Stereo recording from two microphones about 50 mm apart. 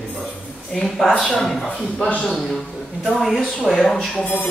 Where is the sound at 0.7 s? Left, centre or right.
Centre.